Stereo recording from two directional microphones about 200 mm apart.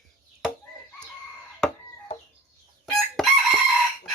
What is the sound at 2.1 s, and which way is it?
Chicken, 35° left (ahead or behind).